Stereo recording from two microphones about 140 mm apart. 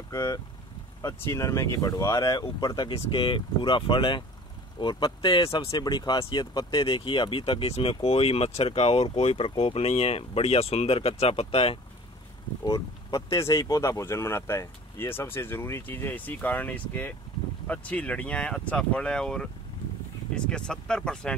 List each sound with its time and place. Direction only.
0.1 s speech: 25° left (ahead or behind); by 11.8 s 40° left (ahead or behind)
12.6 s speech: 25° left (ahead or behind); by 21.4 s 5° left (ahead or behind)